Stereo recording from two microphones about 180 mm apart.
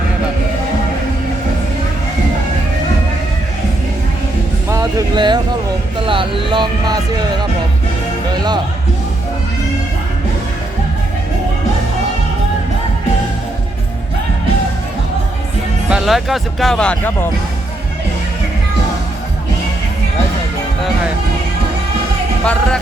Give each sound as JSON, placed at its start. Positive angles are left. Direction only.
{"t": 4.7, "sound": "vehicle", "side_deg": -20}
{"t": 6.1, "sound": "speech", "side_deg": -30}
{"t": 15.9, "sound": "speech", "side_deg": 0}
{"t": 22.4, "sound": "speech", "side_deg": 5}